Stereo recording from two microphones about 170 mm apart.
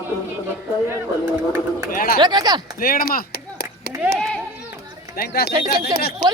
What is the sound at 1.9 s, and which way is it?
Speech, 60° left (ahead or behind).